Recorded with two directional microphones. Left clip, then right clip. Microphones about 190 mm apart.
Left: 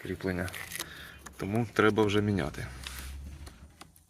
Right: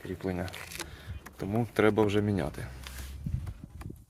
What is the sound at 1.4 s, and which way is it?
Speech, 5° right (ahead or behind).